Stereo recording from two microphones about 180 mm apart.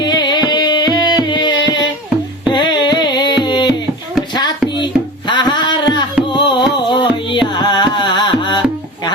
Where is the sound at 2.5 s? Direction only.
25° left (ahead or behind).